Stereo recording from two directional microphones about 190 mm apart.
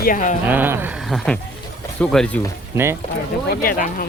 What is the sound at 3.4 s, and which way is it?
Speech, 50° left (ahead or behind).